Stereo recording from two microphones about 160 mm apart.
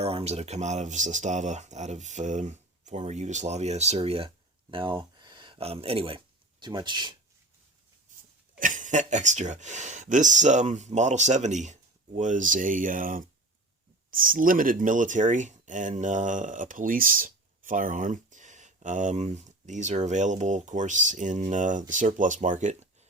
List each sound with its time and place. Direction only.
0.0 s speech: 40° right (ahead or behind)
8.5 s speech: 55° right (ahead or behind)